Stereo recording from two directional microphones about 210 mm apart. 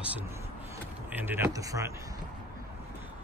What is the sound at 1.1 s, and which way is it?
Speech, 10° right (ahead or behind).